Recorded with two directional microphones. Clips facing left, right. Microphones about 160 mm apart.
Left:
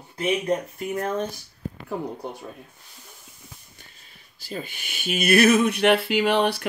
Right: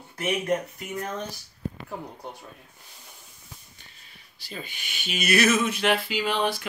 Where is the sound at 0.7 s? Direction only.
45° left (ahead or behind).